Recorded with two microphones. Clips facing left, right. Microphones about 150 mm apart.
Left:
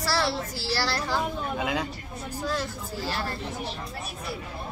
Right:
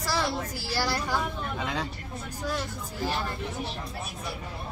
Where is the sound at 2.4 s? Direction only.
15° right (ahead or behind).